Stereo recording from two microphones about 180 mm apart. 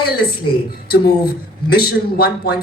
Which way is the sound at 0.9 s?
60° left (ahead or behind).